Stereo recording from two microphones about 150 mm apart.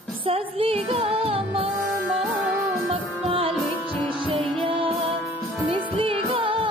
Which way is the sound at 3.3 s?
40° right (ahead or behind).